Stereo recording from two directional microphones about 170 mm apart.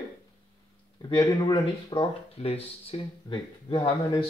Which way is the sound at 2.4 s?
40° left (ahead or behind).